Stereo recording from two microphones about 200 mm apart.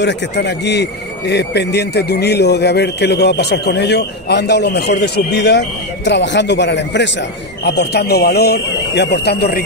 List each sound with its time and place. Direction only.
0.0 s a man's voice: 60° left (ahead or behind)